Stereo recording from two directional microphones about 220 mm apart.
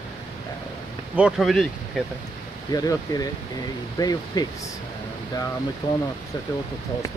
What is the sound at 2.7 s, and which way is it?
Speech, 15° left (ahead or behind).